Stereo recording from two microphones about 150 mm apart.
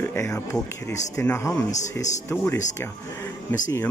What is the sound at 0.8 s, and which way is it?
Speech, 20° left (ahead or behind).